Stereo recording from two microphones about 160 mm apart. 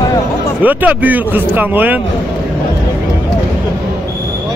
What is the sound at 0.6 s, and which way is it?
Speech, 10° right (ahead or behind).